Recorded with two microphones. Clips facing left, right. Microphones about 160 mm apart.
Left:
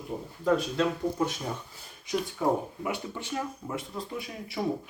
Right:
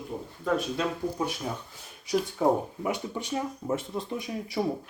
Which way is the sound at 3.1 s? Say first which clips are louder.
Right 3 dB; 25° right (ahead or behind).